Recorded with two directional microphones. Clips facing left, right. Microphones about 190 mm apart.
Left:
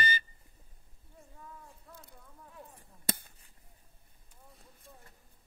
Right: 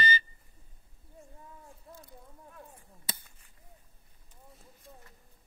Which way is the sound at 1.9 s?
30° right (ahead or behind).